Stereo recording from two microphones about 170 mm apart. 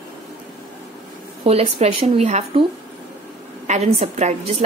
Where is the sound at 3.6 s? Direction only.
40° right (ahead or behind).